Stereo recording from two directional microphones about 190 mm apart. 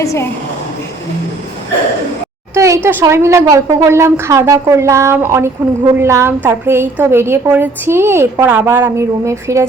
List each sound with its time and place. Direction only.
0.0 s a woman's voice: 15° left (ahead or behind)
2.6 s a woman's voice: 15° right (ahead or behind)